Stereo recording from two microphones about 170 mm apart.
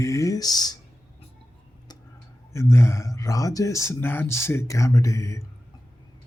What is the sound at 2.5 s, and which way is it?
Speech, 15° left (ahead or behind).